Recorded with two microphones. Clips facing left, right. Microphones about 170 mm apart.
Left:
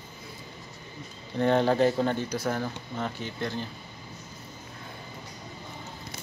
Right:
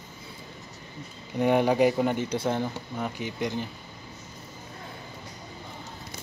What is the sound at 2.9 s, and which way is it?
Speech, 10° right (ahead or behind).